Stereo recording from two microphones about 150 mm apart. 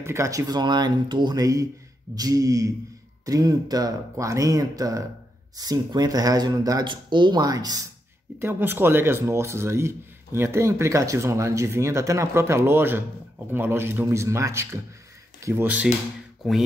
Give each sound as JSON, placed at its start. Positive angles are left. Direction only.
{"t": 0.0, "sound": "speech", "side_deg": -20}
{"t": 8.4, "sound": "speech", "side_deg": -15}